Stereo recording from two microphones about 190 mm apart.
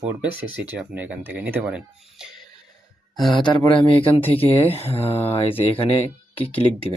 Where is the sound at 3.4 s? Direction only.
25° left (ahead or behind).